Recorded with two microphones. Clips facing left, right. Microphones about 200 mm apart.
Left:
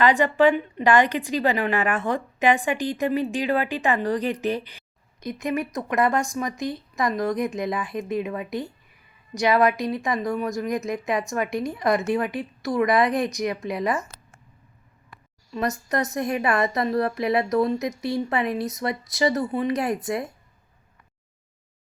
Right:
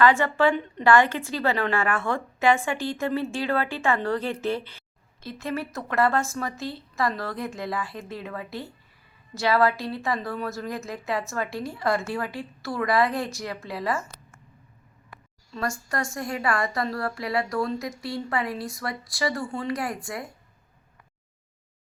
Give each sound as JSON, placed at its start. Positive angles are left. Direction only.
{"t": 0.0, "sound": "a woman's voice", "side_deg": 20}
{"t": 15.5, "sound": "a woman's voice", "side_deg": 20}